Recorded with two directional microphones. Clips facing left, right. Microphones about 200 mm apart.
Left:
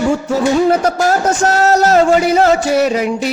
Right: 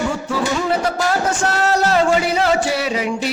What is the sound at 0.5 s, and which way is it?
A man's voice, 45° left (ahead or behind).